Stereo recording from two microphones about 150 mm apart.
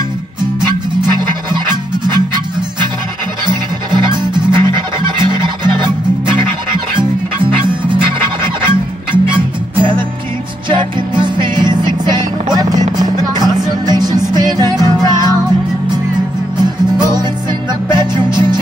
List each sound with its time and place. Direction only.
1.5 s music: 30° right (ahead or behind)
3.4 s music: 30° right (ahead or behind)
9.1 s music: 35° right (ahead or behind)
17.1 s music: 30° right (ahead or behind)